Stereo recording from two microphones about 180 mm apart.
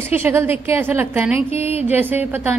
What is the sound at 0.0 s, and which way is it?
A woman's voice, 15° right (ahead or behind).